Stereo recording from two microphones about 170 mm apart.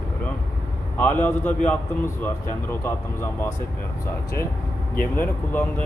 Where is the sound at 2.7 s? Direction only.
15° left (ahead or behind).